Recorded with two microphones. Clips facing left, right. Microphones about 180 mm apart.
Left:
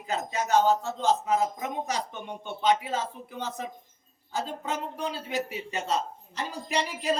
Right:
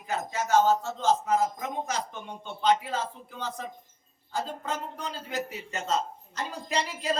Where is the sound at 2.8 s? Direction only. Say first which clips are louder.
Left 1 dB; 15° left (ahead or behind).